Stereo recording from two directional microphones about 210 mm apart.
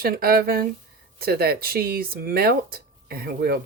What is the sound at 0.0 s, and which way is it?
Speech, 45° right (ahead or behind).